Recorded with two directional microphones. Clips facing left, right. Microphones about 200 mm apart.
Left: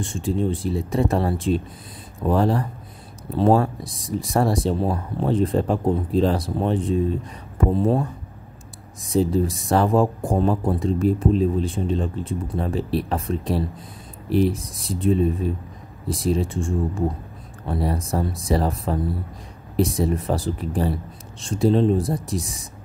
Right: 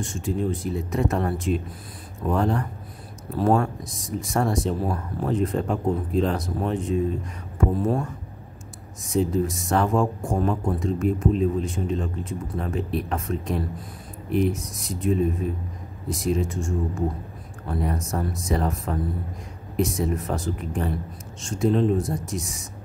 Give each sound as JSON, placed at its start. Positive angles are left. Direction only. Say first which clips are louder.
{"t": 0.0, "sound": "speech", "louder": "left 3 dB", "side_deg": 30}